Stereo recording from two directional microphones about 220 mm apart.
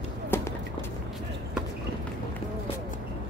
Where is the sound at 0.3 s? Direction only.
10° left (ahead or behind).